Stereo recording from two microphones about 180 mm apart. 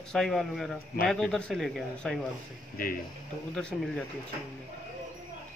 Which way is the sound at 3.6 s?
5° left (ahead or behind).